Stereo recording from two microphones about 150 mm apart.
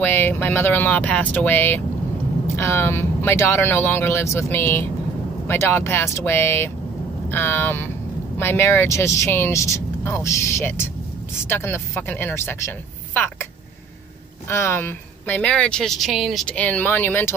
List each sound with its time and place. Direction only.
0.0 s speech: 15° left (ahead or behind)
14.5 s speech: 15° left (ahead or behind)